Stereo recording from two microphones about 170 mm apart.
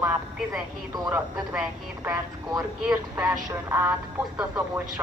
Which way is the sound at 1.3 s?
5° right (ahead or behind).